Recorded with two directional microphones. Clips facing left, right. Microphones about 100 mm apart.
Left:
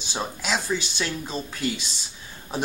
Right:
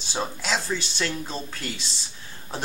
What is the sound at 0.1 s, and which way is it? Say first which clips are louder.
Speech: even; 5° left (ahead or behind).